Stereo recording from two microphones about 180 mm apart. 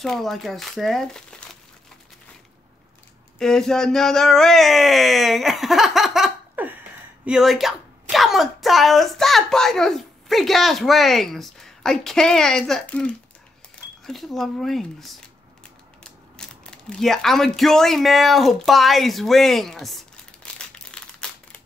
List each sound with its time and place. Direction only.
0.0 s a woman's voice: centre (ahead or behind)
3.3 s a woman's voice: 5° left (ahead or behind)
16.0 s a sound: 5° left (ahead or behind)